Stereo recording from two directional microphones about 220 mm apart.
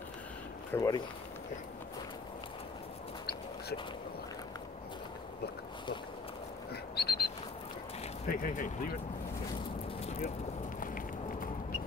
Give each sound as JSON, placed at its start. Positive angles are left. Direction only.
{"t": 0.7, "sound": "speech", "side_deg": 15}
{"t": 6.7, "sound": "bird", "side_deg": 45}
{"t": 8.3, "sound": "speech", "side_deg": 40}
{"t": 10.8, "sound": "run", "side_deg": 40}